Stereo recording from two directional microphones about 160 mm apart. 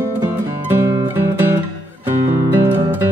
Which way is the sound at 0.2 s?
15° right (ahead or behind).